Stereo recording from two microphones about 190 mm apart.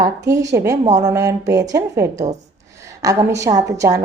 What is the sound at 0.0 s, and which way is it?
A woman's voice, 15° right (ahead or behind).